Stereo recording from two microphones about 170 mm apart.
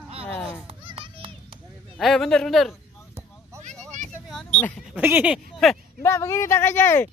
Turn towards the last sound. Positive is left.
turn(degrees=10)  # may be behind; listen again after turning